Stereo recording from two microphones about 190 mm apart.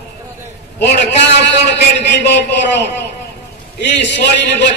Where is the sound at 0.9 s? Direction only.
65° left (ahead or behind).